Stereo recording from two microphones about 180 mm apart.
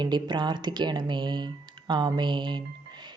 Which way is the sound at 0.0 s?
25° right (ahead or behind).